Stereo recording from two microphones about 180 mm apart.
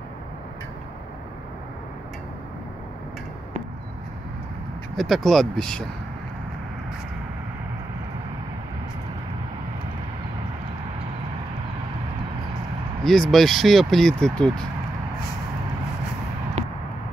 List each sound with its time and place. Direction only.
4.9 s speech: centre (ahead or behind)
13.0 s speech: centre (ahead or behind)
16.6 s a sound: 40° right (ahead or behind)